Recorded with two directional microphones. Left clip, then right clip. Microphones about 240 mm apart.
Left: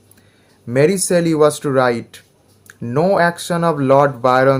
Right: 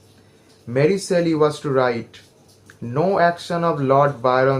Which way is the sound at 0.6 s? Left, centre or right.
Left.